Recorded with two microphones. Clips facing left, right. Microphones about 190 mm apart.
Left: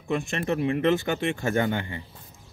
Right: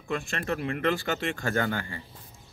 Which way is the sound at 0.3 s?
15° left (ahead or behind).